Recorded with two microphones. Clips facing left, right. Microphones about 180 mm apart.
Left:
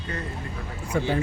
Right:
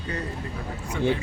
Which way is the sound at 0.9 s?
45° left (ahead or behind).